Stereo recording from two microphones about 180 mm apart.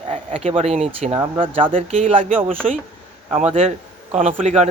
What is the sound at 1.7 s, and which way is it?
Speech, 45° right (ahead or behind).